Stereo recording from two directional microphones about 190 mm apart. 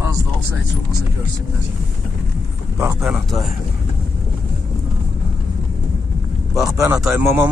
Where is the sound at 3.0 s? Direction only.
Centre (ahead or behind).